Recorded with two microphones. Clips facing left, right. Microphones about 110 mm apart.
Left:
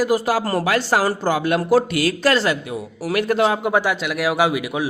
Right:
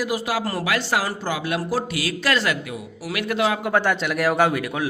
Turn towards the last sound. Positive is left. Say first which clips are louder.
# left 1 dB
turn(degrees=10)  # may be behind; listen again after turning